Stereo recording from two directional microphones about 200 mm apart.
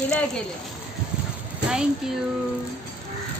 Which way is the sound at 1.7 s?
5° right (ahead or behind).